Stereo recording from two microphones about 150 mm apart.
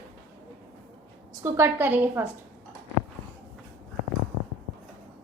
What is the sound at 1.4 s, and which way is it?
Speech, 15° right (ahead or behind).